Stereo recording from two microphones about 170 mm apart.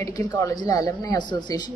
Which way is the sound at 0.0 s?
20° left (ahead or behind).